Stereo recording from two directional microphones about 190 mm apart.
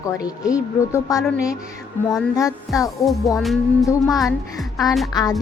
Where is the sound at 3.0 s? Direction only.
Centre (ahead or behind).